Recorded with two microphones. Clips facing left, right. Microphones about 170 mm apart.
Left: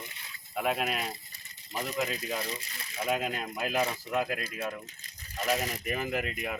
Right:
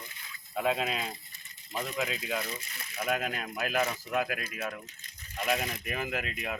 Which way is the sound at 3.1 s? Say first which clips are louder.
Left 1 dB; centre (ahead or behind).